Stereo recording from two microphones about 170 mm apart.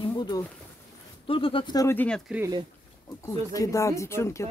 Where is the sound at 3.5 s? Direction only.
20° left (ahead or behind).